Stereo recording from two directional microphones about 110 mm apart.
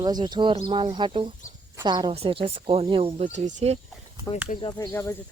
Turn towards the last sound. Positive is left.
turn(degrees=25)  # may be behind; listen again after turning